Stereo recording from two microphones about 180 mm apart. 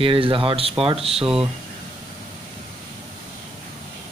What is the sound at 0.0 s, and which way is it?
Speech, 30° right (ahead or behind).